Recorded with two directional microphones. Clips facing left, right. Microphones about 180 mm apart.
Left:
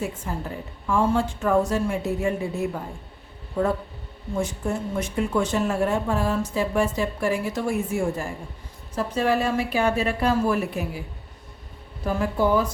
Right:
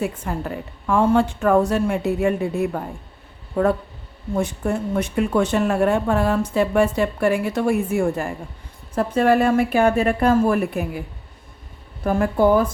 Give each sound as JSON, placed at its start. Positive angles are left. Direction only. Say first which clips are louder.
{"t": 0.0, "sound": "speech", "louder": "right 4 dB", "side_deg": -60}
{"t": 4.4, "sound": "a woman's voice", "louder": "right 4 dB", "side_deg": -60}
{"t": 12.0, "sound": "a woman's voice", "louder": "right 5 dB", "side_deg": -55}